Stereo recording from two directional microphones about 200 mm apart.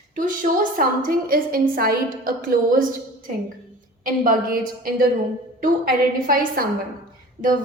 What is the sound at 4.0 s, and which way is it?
A woman's voice, 45° right (ahead or behind).